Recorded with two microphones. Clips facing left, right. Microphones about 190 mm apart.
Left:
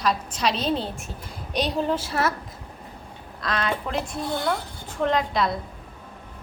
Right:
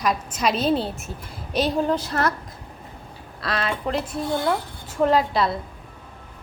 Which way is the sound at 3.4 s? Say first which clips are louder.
Right 1 dB; 5° right (ahead or behind).